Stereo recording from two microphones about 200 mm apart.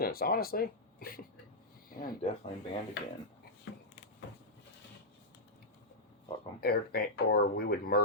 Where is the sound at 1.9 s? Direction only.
45° left (ahead or behind).